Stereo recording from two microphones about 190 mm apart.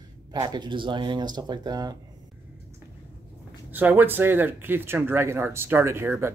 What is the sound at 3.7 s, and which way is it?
Speech, 10° right (ahead or behind).